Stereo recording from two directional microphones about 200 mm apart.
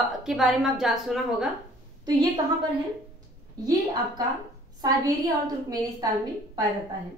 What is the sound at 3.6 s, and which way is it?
A woman's voice, 20° right (ahead or behind).